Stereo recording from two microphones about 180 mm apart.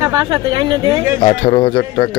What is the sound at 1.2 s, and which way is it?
Speech, 25° left (ahead or behind).